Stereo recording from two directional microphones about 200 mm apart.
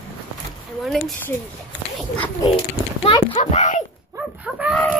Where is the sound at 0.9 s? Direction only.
Centre (ahead or behind).